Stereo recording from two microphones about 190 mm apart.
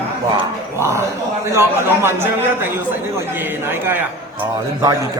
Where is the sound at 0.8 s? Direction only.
15° right (ahead or behind).